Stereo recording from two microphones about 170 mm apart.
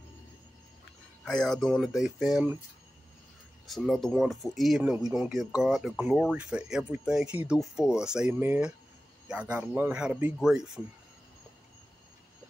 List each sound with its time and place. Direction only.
1.2 s speech: 5° left (ahead or behind)
3.6 s speech: centre (ahead or behind)